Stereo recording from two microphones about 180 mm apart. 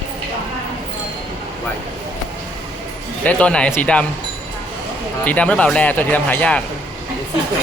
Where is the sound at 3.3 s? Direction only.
5° left (ahead or behind).